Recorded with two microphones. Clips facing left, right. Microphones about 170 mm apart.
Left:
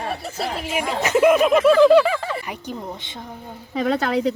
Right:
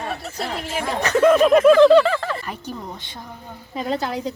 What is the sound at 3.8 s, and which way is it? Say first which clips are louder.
Speech: left 4 dB; 75° left (ahead or behind).